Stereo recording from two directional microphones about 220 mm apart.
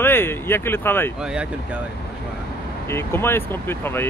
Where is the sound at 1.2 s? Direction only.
5° right (ahead or behind).